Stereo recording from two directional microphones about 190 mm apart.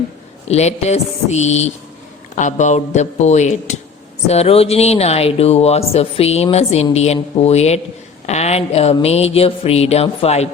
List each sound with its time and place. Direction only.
0.4 s speech: 35° left (ahead or behind)